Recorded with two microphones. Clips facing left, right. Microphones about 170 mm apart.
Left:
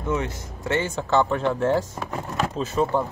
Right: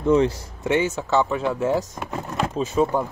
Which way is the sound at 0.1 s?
30° right (ahead or behind).